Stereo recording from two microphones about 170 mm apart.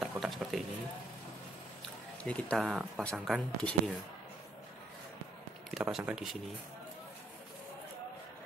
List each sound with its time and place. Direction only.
0.0 s speech: centre (ahead or behind)
2.2 s speech: 5° left (ahead or behind)
5.7 s speech: 5° right (ahead or behind)